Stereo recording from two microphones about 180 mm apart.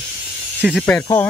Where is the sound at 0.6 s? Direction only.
5° right (ahead or behind).